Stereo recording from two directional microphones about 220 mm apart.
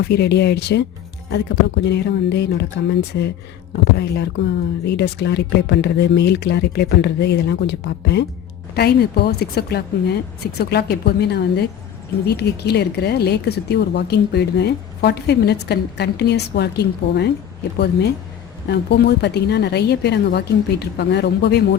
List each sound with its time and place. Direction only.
0.0 s speech: 50° left (ahead or behind)
18.7 s speech: 50° left (ahead or behind)